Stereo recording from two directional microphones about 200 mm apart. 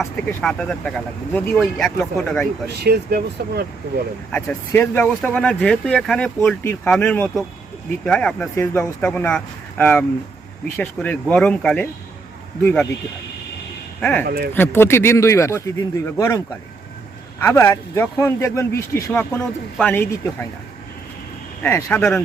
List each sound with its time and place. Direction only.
0.0 s speech: 5° left (ahead or behind)
2.8 s speech: 50° right (ahead or behind)
4.3 s speech: 10° left (ahead or behind)
14.0 s speech: 5° left (ahead or behind)
14.3 s speech: 50° right (ahead or behind)
14.5 s speech: 10° left (ahead or behind)
17.4 s speech: 15° left (ahead or behind)
21.6 s speech: 15° left (ahead or behind)